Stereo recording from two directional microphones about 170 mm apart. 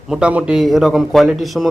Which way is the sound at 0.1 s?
5° right (ahead or behind).